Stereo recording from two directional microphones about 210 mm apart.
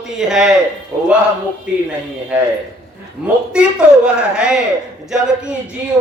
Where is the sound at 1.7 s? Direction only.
5° right (ahead or behind).